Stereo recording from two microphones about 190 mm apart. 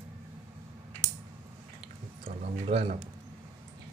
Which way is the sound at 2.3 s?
35° right (ahead or behind).